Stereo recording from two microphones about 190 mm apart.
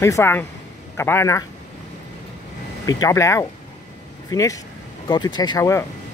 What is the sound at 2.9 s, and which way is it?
Speech, 15° left (ahead or behind).